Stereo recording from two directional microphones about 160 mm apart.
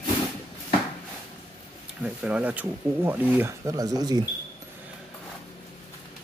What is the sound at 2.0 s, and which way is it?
Speech, 5° right (ahead or behind).